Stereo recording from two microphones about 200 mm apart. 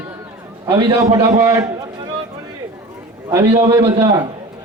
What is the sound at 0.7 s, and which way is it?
Speech, 20° right (ahead or behind).